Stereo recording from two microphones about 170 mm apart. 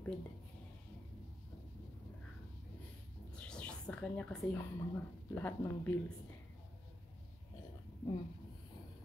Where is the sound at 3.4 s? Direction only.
5° left (ahead or behind).